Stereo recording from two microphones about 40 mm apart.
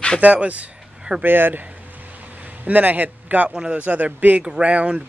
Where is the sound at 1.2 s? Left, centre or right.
Right.